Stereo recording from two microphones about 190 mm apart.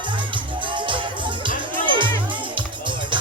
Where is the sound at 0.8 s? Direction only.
25° right (ahead or behind).